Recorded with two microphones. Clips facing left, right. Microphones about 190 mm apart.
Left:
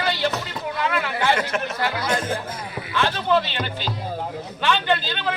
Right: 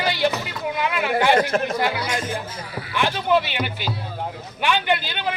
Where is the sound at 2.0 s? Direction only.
60° left (ahead or behind).